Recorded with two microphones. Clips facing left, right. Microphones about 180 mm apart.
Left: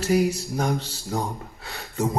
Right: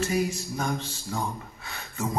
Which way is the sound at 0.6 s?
35° left (ahead or behind).